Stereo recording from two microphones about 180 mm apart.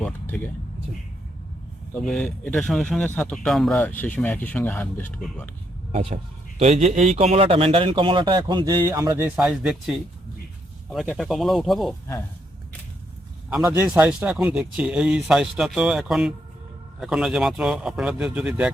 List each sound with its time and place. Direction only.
0.0 s vehicle: 10° left (ahead or behind)
1.9 s speech: 5° left (ahead or behind)
5.9 s a man's voice: 30° right (ahead or behind); by 9.4 s 10° right (ahead or behind)
9.4 s speech: centre (ahead or behind)
11.1 s speech: centre (ahead or behind)
13.7 s speech: 15° right (ahead or behind)